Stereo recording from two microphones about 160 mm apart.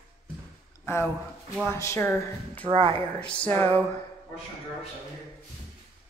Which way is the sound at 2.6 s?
35° right (ahead or behind).